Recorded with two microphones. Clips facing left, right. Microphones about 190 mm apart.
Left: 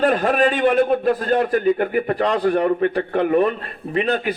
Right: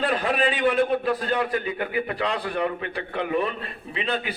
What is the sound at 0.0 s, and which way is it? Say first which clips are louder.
A man's voice: left 6 dB; 45° left (ahead or behind).